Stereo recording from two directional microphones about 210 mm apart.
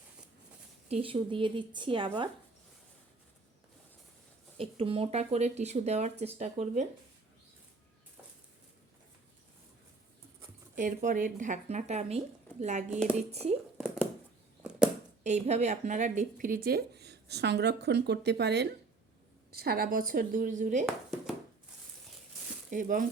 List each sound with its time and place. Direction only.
0.9 s speech: 25° right (ahead or behind)
4.5 s speech: 25° right (ahead or behind)
10.8 s speech: 40° right (ahead or behind)
12.9 s speech: 5° right (ahead or behind)
13.1 s speech: 30° right (ahead or behind)
13.7 s a sound: 5° right (ahead or behind)
15.2 s speech: 35° right (ahead or behind)
22.7 s speech: 40° right (ahead or behind)